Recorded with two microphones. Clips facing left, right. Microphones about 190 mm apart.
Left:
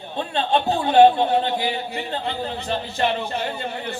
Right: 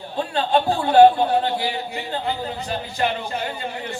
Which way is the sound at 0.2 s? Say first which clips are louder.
Right 1 dB; 25° left (ahead or behind).